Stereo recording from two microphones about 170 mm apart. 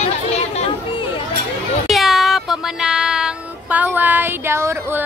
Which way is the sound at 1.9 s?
Centre (ahead or behind).